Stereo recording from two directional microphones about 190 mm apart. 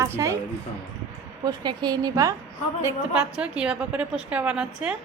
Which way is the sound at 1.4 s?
20° right (ahead or behind).